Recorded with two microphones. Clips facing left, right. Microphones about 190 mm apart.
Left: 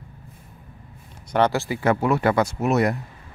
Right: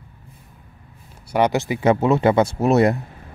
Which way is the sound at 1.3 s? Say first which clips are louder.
Right 2 dB; 15° right (ahead or behind).